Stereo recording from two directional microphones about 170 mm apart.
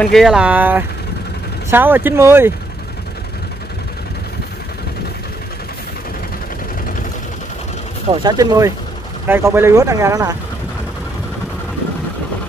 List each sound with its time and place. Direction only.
0.0 s speech: centre (ahead or behind)
8.1 s speech: 25° right (ahead or behind)